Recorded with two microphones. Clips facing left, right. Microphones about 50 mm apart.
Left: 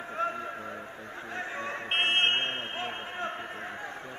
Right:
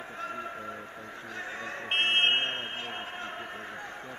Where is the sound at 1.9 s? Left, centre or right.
Centre.